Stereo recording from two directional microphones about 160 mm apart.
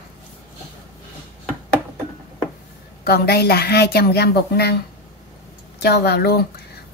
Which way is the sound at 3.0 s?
80° left.